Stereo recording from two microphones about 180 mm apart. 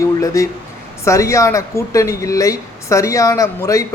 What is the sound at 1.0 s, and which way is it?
A man's voice, 15° left (ahead or behind).